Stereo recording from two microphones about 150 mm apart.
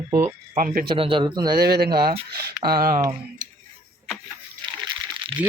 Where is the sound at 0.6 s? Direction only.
60° right (ahead or behind).